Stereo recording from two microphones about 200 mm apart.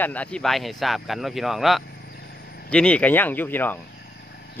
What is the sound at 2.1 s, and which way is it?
Vehicle, 50° left (ahead or behind).